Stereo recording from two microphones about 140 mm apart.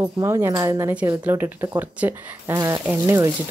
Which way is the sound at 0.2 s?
25° right (ahead or behind).